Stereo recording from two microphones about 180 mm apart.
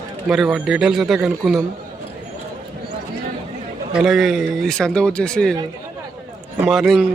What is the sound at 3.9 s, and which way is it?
A man's voice, centre (ahead or behind).